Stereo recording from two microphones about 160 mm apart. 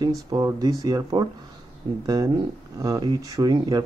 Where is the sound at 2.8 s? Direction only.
20° right (ahead or behind).